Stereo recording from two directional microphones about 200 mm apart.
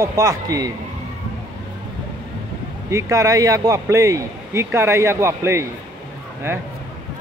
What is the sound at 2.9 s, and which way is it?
A man's voice, 15° right (ahead or behind).